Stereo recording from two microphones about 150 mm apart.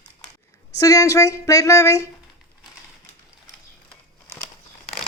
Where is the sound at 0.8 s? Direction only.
20° left (ahead or behind).